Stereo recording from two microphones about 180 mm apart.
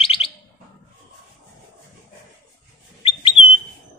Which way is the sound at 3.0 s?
30° left (ahead or behind).